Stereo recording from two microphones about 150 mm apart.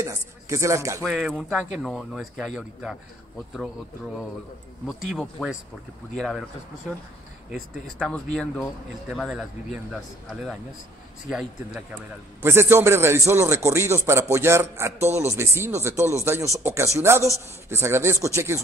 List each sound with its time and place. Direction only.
0.0 s speech: 20° right (ahead or behind)
1.0 s a man's voice: centre (ahead or behind)
4.8 s a man's voice: centre (ahead or behind)
7.5 s a man's voice: 5° left (ahead or behind)
12.4 s a man's voice: 15° right (ahead or behind)